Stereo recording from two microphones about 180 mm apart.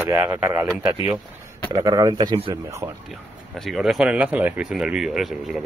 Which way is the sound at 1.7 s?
20° right (ahead or behind).